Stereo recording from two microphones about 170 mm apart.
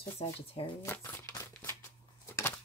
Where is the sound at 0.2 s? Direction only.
30° left (ahead or behind).